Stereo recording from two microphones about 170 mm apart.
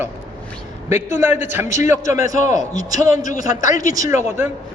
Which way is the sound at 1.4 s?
15° right (ahead or behind).